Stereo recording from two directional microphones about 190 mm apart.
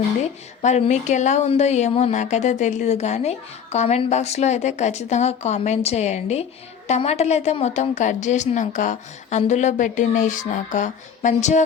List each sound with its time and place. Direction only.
0.6 s speech: 40° left (ahead or behind)